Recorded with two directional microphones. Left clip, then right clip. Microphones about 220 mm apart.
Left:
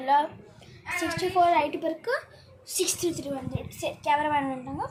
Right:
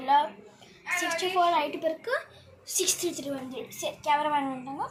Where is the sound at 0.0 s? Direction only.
20° left (ahead or behind).